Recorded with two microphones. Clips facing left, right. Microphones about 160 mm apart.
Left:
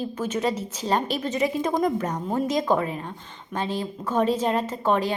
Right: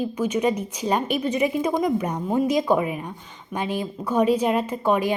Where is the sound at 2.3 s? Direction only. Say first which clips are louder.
Right 3 dB; 15° right (ahead or behind).